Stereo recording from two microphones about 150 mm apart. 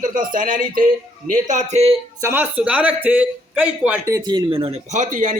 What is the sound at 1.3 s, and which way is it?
Speech, 55° right (ahead or behind).